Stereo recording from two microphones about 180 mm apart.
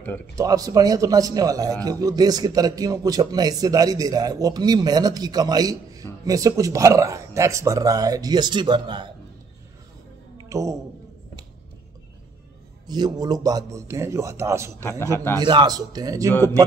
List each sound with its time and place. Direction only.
0.4 s a man's voice: 20° right (ahead or behind)
10.3 s a sound: 15° right (ahead or behind)
12.8 s a man's voice: 20° right (ahead or behind)
14.8 s a man's voice: 15° left (ahead or behind)
15.3 s a man's voice: 25° right (ahead or behind)